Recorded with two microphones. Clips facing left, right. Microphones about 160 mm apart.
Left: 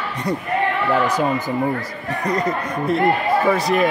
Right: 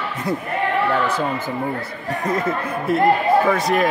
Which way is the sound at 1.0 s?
15° left (ahead or behind).